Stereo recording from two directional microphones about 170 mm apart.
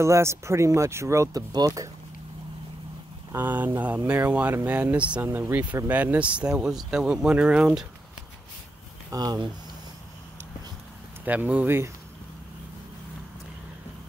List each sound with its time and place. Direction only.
0.0 s speech: 15° right (ahead or behind)
3.3 s speech: 10° right (ahead or behind)
9.1 s speech: 25° right (ahead or behind)
11.2 s speech: 10° right (ahead or behind)